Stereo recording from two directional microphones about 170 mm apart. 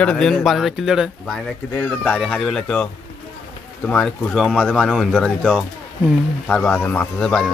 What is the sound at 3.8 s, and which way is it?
Speech, 5° left (ahead or behind).